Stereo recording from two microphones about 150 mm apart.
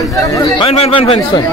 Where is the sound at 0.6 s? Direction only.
40° left (ahead or behind).